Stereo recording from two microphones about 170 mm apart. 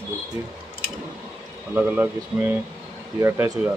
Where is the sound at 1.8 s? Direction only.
10° right (ahead or behind).